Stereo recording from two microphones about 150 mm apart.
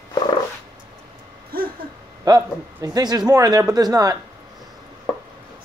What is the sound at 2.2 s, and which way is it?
Speech, 25° right (ahead or behind).